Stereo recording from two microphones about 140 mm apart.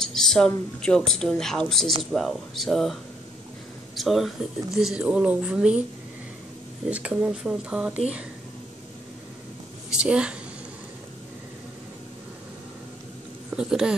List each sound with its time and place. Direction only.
0.0 s speech: 5° left (ahead or behind)
6.9 s speech: 10° right (ahead or behind)
9.9 s speech: 5° right (ahead or behind)
13.5 s speech: 5° right (ahead or behind)